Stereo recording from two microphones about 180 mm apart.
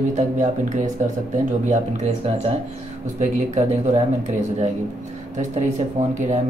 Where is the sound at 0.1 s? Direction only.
45° right (ahead or behind).